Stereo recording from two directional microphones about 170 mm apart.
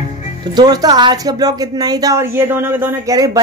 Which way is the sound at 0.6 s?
25° right (ahead or behind).